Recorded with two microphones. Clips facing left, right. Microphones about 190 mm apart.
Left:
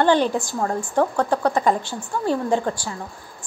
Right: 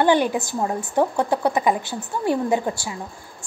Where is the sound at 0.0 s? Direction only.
10° right (ahead or behind).